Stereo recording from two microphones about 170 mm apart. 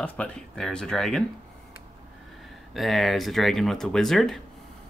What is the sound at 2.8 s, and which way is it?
Speech, centre (ahead or behind).